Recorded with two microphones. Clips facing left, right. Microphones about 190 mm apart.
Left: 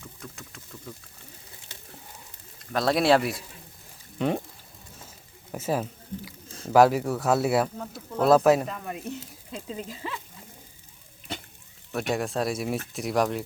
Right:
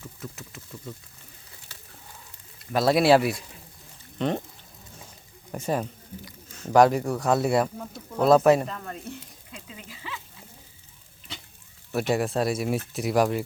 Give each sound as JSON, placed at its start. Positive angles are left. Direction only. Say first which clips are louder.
{"t": 0.0, "sound": "a sound", "louder": "right 3 dB", "side_deg": -5}
{"t": 2.7, "sound": "speech", "louder": "right 3 dB", "side_deg": -5}
{"t": 5.5, "sound": "speech", "louder": "even", "side_deg": 5}
{"t": 9.5, "sound": "speech", "louder": "left 9 dB", "side_deg": 35}
{"t": 11.9, "sound": "speech", "louder": "right 3 dB", "side_deg": 0}